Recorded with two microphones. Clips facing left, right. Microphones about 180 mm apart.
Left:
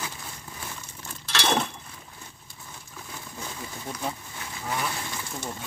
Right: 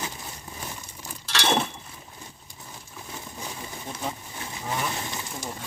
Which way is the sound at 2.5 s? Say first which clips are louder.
Right 1 dB; 20° right (ahead or behind).